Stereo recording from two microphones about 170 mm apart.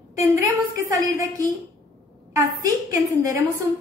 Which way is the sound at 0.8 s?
20° right (ahead or behind).